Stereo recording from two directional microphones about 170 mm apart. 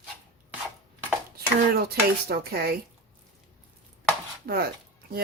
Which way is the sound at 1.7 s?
65° right (ahead or behind).